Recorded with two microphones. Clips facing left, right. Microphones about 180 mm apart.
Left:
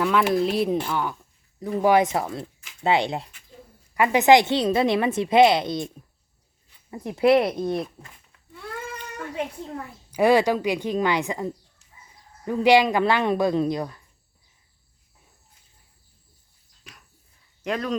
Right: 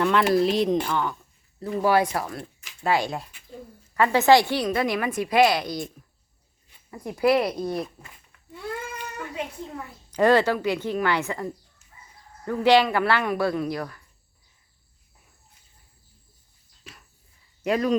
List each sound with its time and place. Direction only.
0.0 s a woman's voice: 5° left (ahead or behind); by 5.9 s 25° left (ahead or behind)
6.9 s a woman's voice: 20° left (ahead or behind)
10.1 s a woman's voice: 10° left (ahead or behind)
16.9 s a sound: 5° right (ahead or behind)
17.6 s speech: 10° right (ahead or behind)